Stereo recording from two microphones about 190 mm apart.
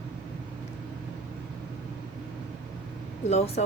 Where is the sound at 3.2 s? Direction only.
35° left (ahead or behind).